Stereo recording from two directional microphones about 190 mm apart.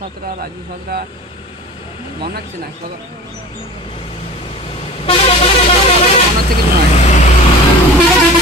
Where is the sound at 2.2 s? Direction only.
55° right (ahead or behind).